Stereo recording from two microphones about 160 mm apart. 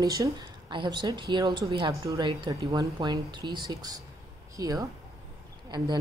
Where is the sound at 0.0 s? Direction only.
25° right (ahead or behind).